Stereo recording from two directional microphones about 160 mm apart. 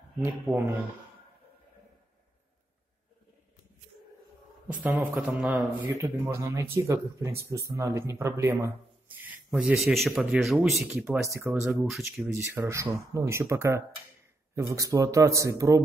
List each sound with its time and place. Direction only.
4.6 s speech: 10° right (ahead or behind)
5.9 s speech: 15° right (ahead or behind); by 12.3 s centre (ahead or behind)
12.3 s a man's voice: 15° right (ahead or behind)